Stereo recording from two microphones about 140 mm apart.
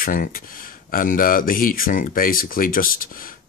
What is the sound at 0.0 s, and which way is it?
Speech, 85° left.